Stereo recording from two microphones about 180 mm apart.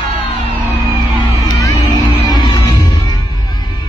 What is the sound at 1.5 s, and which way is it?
Music, 20° left (ahead or behind).